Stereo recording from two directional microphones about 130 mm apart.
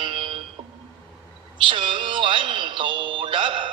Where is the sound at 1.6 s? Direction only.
40° right (ahead or behind).